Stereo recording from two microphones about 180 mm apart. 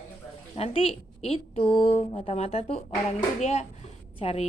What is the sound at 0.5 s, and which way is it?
A woman's voice, 35° left (ahead or behind).